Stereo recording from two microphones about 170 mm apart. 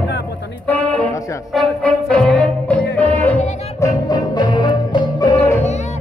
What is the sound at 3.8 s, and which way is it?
Music, 25° left (ahead or behind).